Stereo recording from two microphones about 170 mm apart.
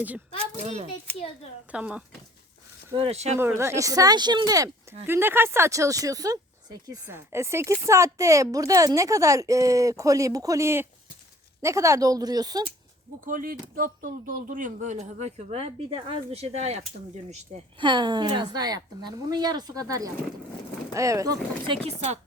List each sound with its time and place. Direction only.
1.7 s speech: 5° right (ahead or behind)
2.9 s a woman's voice: 35° right (ahead or behind)
3.3 s speech: 15° right (ahead or behind)
13.2 s a woman's voice: 55° right (ahead or behind)
17.7 s speech: 25° right (ahead or behind)
21.8 s speech: 40° right (ahead or behind)